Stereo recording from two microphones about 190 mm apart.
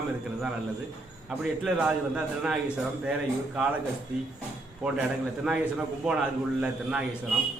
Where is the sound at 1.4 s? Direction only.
Centre (ahead or behind).